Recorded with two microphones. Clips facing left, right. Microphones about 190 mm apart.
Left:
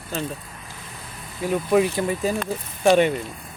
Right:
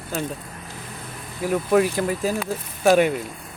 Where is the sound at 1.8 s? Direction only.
5° right (ahead or behind).